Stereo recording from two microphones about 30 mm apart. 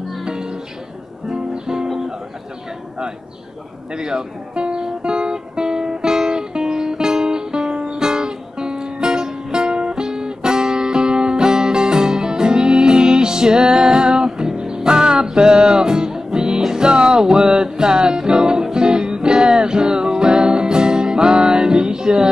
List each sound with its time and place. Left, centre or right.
0.2 s music: right
3.9 s music: right